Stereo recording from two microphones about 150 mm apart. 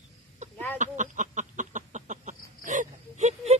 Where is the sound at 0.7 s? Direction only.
55° right (ahead or behind).